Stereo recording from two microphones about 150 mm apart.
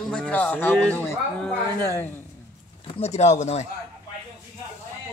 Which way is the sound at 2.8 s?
45° left (ahead or behind).